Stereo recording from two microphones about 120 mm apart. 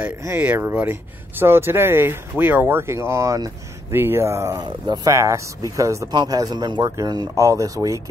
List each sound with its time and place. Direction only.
0.4 s speech: 15° right (ahead or behind)